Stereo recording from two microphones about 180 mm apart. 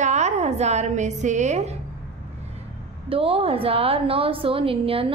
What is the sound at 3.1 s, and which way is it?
A woman's voice, 30° right (ahead or behind).